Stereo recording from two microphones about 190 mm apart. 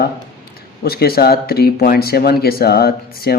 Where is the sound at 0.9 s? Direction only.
55° left (ahead or behind).